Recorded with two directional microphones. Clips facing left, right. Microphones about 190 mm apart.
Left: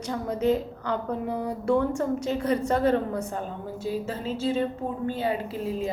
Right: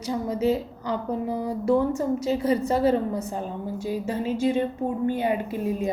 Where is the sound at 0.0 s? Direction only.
10° right (ahead or behind).